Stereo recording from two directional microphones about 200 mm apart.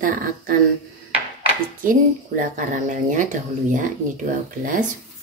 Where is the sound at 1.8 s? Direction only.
40° right (ahead or behind).